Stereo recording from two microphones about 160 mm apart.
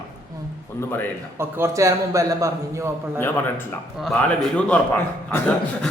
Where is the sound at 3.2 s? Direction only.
10° left (ahead or behind).